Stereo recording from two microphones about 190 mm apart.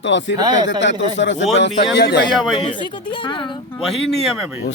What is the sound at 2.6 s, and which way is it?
Speech, 25° left (ahead or behind).